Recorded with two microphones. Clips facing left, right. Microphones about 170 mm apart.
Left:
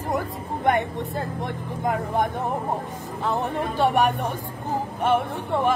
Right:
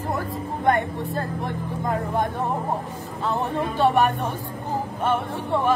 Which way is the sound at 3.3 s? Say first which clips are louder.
Right 1 dB; 15° left (ahead or behind).